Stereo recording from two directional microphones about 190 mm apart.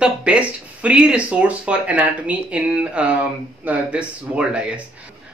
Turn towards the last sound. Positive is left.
turn(degrees=-5)  # may be behind; listen again after turning